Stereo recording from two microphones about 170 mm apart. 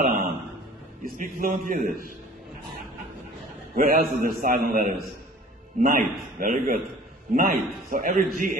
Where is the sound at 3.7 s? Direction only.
60° right (ahead or behind).